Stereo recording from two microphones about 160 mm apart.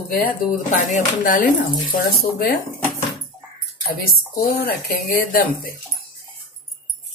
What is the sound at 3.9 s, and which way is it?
Speech, 65° left (ahead or behind).